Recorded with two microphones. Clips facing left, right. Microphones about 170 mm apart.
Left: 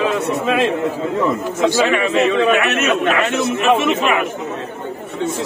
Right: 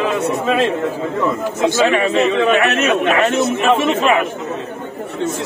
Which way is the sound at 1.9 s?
30° right (ahead or behind).